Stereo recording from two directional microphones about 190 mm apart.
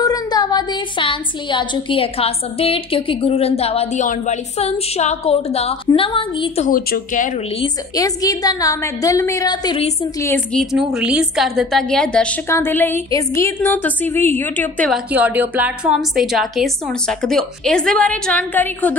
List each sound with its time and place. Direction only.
0.0 s a woman's voice: 20° left (ahead or behind)
6.6 s speech: 45° left (ahead or behind)
7.6 s a woman's voice: 20° left (ahead or behind)
10.2 s a woman's voice: 10° left (ahead or behind)
14.9 s a woman's voice: 10° right (ahead or behind); by 18.9 s 10° left (ahead or behind)